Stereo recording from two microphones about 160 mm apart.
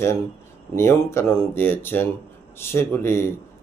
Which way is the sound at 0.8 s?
15° left (ahead or behind).